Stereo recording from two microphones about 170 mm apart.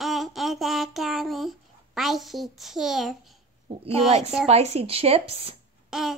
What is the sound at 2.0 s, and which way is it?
A child's voice, centre (ahead or behind).